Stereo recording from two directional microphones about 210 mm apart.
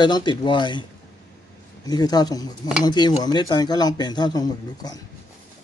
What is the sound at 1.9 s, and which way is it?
Speech, 20° left (ahead or behind).